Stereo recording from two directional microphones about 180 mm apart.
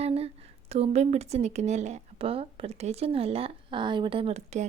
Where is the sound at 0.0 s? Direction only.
35° right (ahead or behind).